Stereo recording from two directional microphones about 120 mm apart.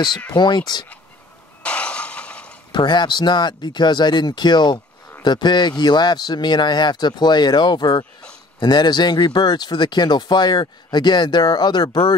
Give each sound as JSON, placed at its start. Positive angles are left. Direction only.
{"t": 0.3, "sound": "speech", "side_deg": 35}
{"t": 1.6, "sound": "shatter", "side_deg": 10}
{"t": 2.7, "sound": "speech", "side_deg": 40}